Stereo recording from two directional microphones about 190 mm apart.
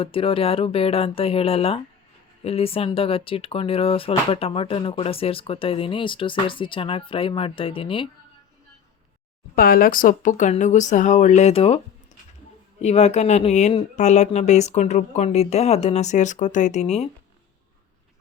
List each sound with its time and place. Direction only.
0.0 s speech: 30° left (ahead or behind)
9.6 s speech: 50° left (ahead or behind); by 11.8 s 30° left (ahead or behind)
12.8 s speech: 35° left (ahead or behind)